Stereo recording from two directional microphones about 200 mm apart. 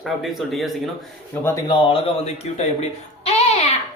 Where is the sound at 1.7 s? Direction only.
25° left (ahead or behind).